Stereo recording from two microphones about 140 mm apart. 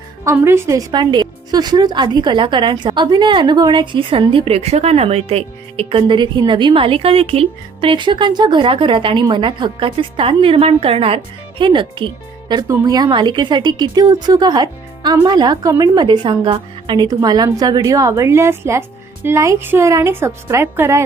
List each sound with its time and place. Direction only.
0.3 s a woman's voice: 20° right (ahead or behind)